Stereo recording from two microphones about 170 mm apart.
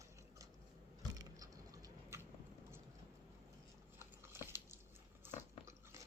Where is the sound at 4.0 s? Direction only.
15° right (ahead or behind).